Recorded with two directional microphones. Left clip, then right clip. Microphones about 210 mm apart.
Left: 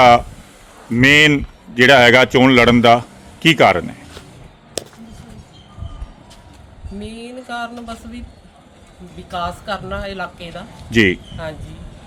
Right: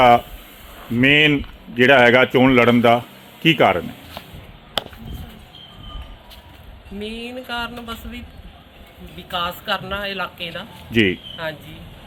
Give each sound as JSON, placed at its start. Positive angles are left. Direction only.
{"t": 0.0, "sound": "speech", "side_deg": 15}
{"t": 7.0, "sound": "speech", "side_deg": 5}
{"t": 9.3, "sound": "speech", "side_deg": 5}
{"t": 10.9, "sound": "speech", "side_deg": 15}